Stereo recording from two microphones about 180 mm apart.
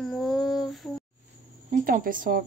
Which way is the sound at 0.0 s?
Centre (ahead or behind).